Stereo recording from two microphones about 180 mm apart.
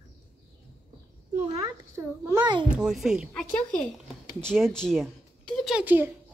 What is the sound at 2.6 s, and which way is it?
A woman's voice, 5° right (ahead or behind).